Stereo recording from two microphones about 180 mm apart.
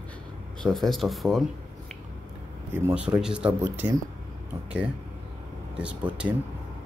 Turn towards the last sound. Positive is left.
turn(degrees=-5)  # may be behind; listen again after turning